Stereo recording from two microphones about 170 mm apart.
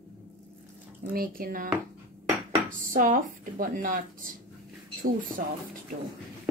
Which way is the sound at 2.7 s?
50° right (ahead or behind).